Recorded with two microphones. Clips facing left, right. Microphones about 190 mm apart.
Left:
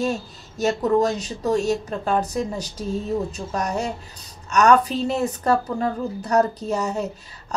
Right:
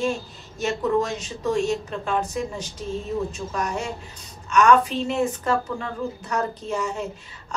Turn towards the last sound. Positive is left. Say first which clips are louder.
# left 3 dB
turn(degrees=40)  # may be behind; listen again after turning